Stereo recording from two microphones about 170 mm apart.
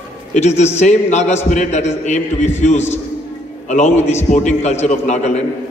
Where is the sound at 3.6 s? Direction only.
45° left (ahead or behind).